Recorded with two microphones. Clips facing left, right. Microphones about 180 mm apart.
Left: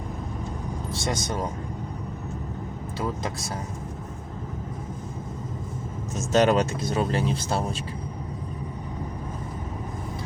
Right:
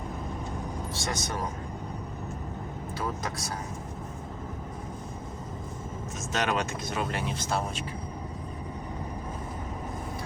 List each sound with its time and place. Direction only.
1.1 s speech: 25° left (ahead or behind)
3.0 s speech: 25° left (ahead or behind)
6.3 s speech: 35° left (ahead or behind)